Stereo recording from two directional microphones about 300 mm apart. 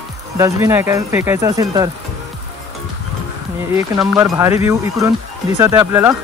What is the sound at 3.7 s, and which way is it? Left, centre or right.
Speech, centre.